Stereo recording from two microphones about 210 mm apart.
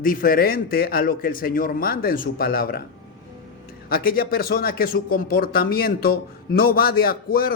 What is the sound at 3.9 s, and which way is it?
Speech, 45° left (ahead or behind).